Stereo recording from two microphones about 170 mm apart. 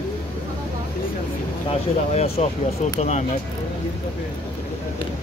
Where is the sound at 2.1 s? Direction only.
40° left (ahead or behind).